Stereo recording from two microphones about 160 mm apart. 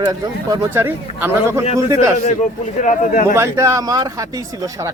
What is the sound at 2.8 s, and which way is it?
Speech, 55° left (ahead or behind).